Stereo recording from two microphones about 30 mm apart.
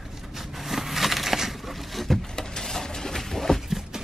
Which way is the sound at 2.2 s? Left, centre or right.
Left.